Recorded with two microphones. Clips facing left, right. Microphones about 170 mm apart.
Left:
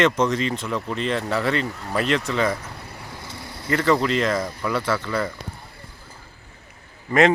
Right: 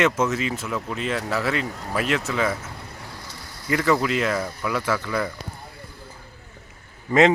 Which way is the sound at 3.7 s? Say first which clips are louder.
Left 1 dB; 10° right (ahead or behind).